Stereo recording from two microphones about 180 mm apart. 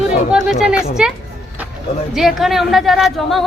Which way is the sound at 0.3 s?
5° right (ahead or behind).